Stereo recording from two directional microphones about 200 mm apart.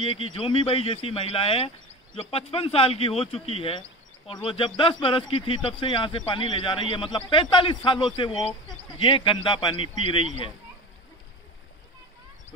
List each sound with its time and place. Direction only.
0.0 s speech: 25° left (ahead or behind)